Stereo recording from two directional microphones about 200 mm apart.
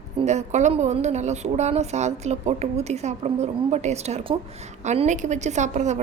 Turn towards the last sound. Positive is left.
turn(degrees=-35)  # may be behind; listen again after turning